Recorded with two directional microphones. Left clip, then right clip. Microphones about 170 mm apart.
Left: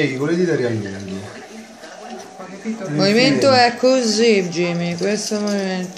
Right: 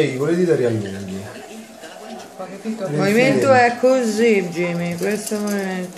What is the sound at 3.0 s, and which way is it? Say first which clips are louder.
Speech: left 2 dB; 20° left (ahead or behind).